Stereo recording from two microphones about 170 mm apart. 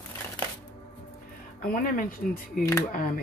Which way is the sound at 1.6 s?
55° left (ahead or behind).